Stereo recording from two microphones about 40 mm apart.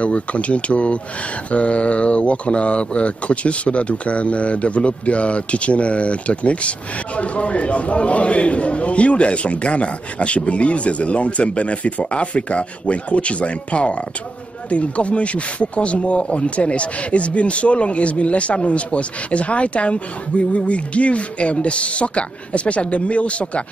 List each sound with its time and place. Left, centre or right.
0.0 s speech: left